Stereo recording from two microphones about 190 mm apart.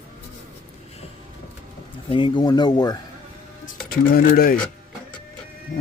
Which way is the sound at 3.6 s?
45° left (ahead or behind).